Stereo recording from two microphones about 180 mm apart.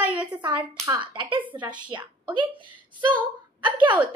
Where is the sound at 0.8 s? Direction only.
25° right (ahead or behind).